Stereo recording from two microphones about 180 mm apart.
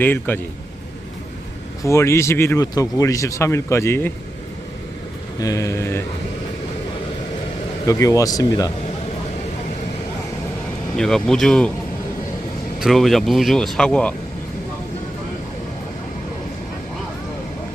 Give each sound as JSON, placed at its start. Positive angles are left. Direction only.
{"t": 0.0, "sound": "speech", "side_deg": 10}
{"t": 1.8, "sound": "speech", "side_deg": 15}
{"t": 5.4, "sound": "speech", "side_deg": 20}
{"t": 7.9, "sound": "speech", "side_deg": 20}
{"t": 10.9, "sound": "speech", "side_deg": 5}
{"t": 12.8, "sound": "speech", "side_deg": 0}